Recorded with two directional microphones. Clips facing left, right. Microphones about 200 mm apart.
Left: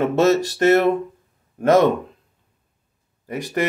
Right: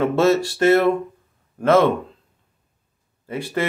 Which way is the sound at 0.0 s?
20° left (ahead or behind).